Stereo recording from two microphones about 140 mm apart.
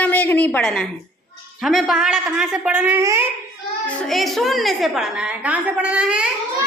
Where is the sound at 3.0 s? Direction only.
20° right (ahead or behind).